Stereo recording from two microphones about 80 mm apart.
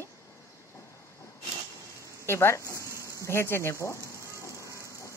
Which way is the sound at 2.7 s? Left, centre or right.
Left.